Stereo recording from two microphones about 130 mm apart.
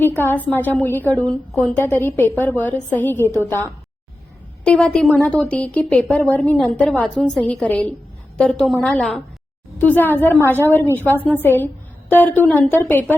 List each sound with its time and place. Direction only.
0.0 s a woman's voice: 15° left (ahead or behind)